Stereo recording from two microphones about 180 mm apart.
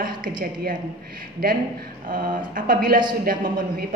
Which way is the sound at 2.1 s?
50° right (ahead or behind).